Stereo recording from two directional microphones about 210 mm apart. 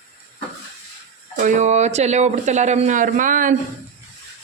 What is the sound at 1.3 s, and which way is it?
Speech, 35° right (ahead or behind).